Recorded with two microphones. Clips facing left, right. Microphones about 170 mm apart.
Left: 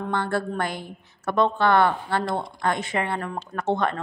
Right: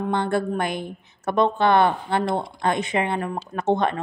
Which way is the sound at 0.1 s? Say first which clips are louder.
Right 2 dB; 20° right (ahead or behind).